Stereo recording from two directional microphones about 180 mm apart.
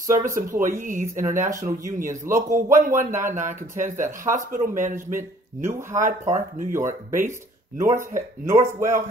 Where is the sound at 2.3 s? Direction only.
50° right (ahead or behind).